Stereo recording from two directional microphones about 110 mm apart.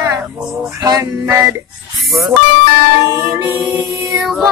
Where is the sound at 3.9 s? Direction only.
25° right (ahead or behind).